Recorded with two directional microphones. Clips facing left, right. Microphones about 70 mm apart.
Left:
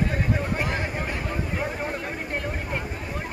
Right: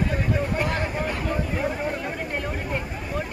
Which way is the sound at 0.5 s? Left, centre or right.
Centre.